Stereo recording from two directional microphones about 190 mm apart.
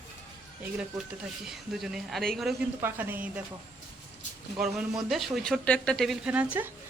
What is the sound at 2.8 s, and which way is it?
Speech, 10° right (ahead or behind).